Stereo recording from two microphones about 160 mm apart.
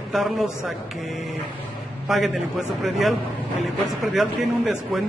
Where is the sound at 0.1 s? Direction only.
Centre (ahead or behind).